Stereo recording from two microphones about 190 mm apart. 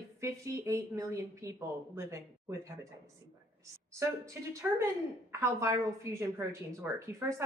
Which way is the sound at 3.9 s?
15° right (ahead or behind).